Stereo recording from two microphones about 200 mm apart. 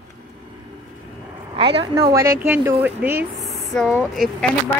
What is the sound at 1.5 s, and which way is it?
Speech, 25° right (ahead or behind).